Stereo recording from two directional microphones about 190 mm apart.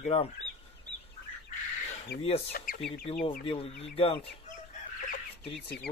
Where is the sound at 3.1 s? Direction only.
35° left (ahead or behind).